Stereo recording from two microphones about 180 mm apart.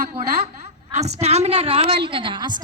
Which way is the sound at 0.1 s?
35° right (ahead or behind).